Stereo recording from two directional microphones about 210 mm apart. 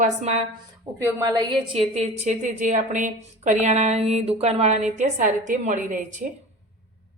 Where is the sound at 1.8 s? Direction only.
30° right (ahead or behind).